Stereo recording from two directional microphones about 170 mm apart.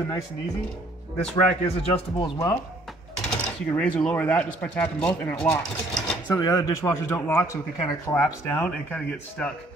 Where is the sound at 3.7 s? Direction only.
10° left (ahead or behind).